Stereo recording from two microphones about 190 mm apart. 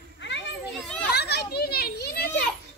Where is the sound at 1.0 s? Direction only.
60° left (ahead or behind).